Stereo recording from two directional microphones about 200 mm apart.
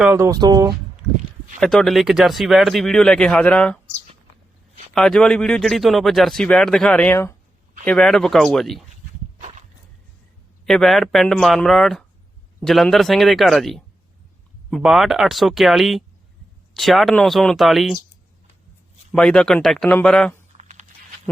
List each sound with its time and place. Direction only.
0.0 s speech: 10° right (ahead or behind)
1.5 s speech: centre (ahead or behind)
4.9 s speech: 5° left (ahead or behind)
10.7 s speech: centre (ahead or behind)
19.1 s speech: 5° left (ahead or behind)
20.6 s a sound: 35° right (ahead or behind)